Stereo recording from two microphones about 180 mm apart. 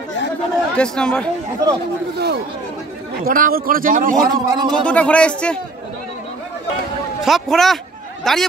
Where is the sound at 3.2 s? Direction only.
55° right (ahead or behind).